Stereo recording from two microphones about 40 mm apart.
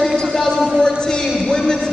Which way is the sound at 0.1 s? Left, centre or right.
Centre.